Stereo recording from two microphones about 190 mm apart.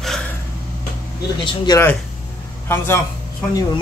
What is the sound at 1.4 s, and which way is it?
Speech, 25° left (ahead or behind).